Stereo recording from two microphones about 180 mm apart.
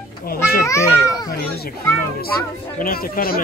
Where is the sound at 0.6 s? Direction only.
15° left (ahead or behind).